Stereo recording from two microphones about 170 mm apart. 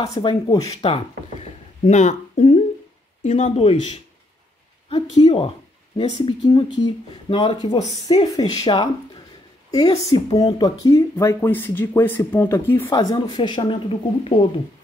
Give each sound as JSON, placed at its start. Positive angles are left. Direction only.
{"t": 0.1, "sound": "speech", "side_deg": 25}
{"t": 0.7, "sound": "speech", "side_deg": 35}
{"t": 6.2, "sound": "speech", "side_deg": 25}
{"t": 12.9, "sound": "speech", "side_deg": 25}